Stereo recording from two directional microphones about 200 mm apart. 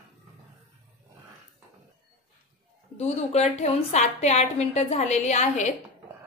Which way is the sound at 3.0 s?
35° left (ahead or behind).